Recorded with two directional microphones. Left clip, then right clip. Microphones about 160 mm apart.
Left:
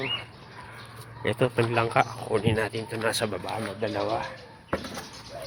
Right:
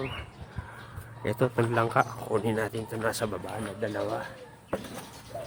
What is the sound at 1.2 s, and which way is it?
Speech, 15° right (ahead or behind).